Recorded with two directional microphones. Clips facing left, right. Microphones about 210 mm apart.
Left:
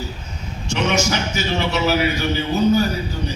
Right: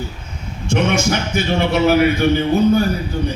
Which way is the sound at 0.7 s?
55° right (ahead or behind).